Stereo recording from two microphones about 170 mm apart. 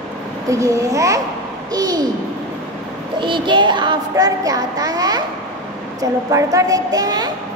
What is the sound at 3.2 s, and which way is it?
Child singing, 25° right (ahead or behind).